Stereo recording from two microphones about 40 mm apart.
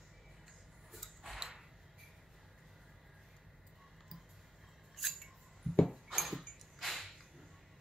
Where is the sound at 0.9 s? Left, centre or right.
Centre.